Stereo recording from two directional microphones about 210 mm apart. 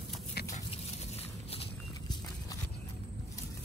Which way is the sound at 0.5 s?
30° left (ahead or behind).